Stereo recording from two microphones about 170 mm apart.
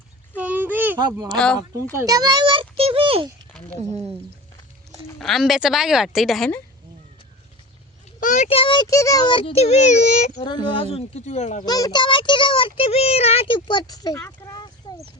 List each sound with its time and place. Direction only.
0.3 s a sound: 10° right (ahead or behind)
1.3 s a woman's voice: 5° left (ahead or behind)
2.0 s a child's voice: 20° right (ahead or behind)
3.8 s speech: 25° left (ahead or behind)
5.2 s a woman's voice: centre (ahead or behind)
8.2 s a child's voice: 50° left (ahead or behind)
8.4 s a child's voice: 30° left (ahead or behind)
10.4 s a child's voice: 30° left (ahead or behind)
11.6 s speech: 25° left (ahead or behind)